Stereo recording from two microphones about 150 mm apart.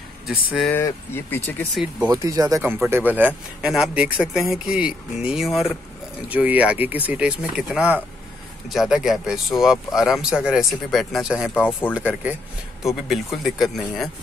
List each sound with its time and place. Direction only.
0.7 s speech: 15° left (ahead or behind)
2.0 s speech: 25° right (ahead or behind); by 11.5 s centre (ahead or behind)
11.5 s speech: 10° left (ahead or behind)
11.9 s speech: 10° right (ahead or behind)